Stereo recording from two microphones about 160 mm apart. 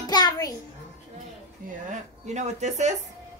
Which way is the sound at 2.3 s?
45° right (ahead or behind).